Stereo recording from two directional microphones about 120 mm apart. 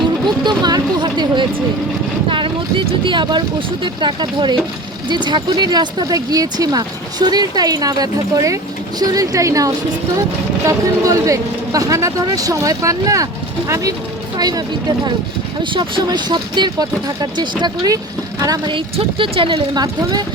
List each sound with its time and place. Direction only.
0.3 s a sound: 35° right (ahead or behind)
2.3 s speech: 45° right (ahead or behind)
18.7 s speech: 50° right (ahead or behind)
19.8 s speech: 35° right (ahead or behind)